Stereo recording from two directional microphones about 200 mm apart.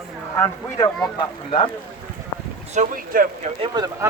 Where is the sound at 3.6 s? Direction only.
20° right (ahead or behind).